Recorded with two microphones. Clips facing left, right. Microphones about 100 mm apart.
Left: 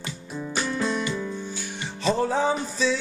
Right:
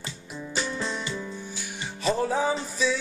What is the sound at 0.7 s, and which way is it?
Music, 25° right (ahead or behind).